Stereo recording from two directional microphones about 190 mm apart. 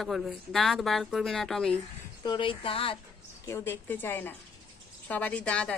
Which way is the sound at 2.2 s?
25° left (ahead or behind).